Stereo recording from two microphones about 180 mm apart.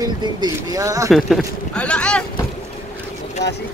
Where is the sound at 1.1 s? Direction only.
5° left (ahead or behind).